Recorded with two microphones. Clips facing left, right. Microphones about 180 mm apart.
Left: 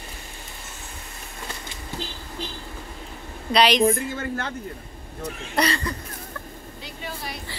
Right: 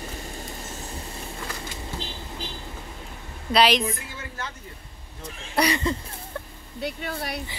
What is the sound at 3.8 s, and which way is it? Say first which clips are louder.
Speech: left 10 dB; 50° left (ahead or behind).